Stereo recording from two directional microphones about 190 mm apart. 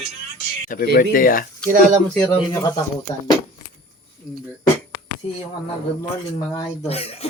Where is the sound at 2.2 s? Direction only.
10° left (ahead or behind).